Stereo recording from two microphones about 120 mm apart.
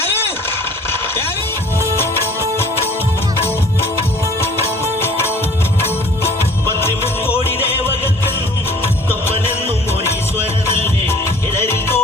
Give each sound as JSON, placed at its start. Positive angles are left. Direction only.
{"t": 4.9, "sound": "music", "side_deg": 20}
{"t": 6.7, "sound": "music", "side_deg": 20}
{"t": 8.8, "sound": "music", "side_deg": 20}